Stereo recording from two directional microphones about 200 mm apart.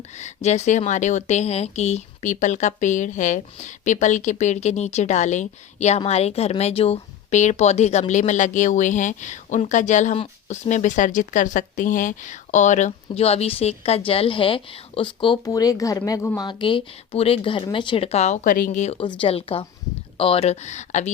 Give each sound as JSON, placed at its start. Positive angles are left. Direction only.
{"t": 0.2, "sound": "speech", "side_deg": 35}